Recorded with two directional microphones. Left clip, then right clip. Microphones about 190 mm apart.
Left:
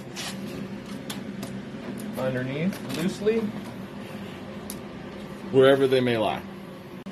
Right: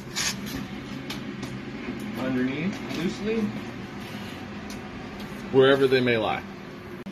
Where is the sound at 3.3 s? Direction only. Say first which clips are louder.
Left 5 dB; 60° left (ahead or behind).